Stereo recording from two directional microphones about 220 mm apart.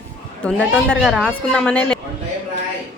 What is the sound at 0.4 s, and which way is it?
A woman's voice, centre (ahead or behind).